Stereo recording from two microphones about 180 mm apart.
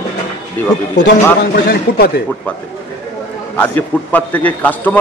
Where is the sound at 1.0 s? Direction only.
60° left (ahead or behind).